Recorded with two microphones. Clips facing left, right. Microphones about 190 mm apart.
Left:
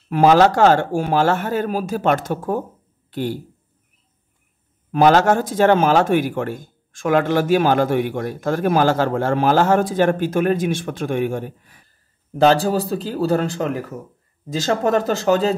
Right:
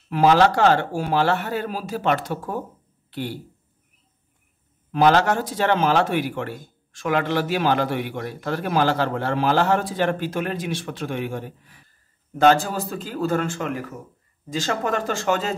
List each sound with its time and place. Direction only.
0.1 s speech: 50° left (ahead or behind)
4.9 s speech: 45° left (ahead or behind)
12.4 s speech: 35° left (ahead or behind)